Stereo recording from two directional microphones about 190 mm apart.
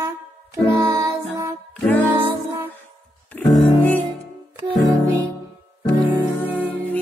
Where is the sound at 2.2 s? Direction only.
10° right (ahead or behind).